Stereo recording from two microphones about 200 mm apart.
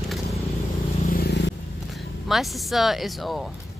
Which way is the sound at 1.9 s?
Centre (ahead or behind).